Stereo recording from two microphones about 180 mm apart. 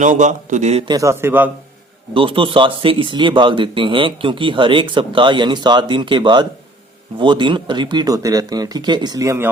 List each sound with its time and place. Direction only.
0.0 s a man's voice: 45° right (ahead or behind)
0.9 s a man's voice: 20° right (ahead or behind)
2.1 s speech: 30° right (ahead or behind)